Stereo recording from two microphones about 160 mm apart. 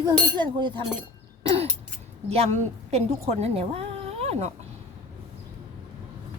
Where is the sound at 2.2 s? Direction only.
40° right (ahead or behind).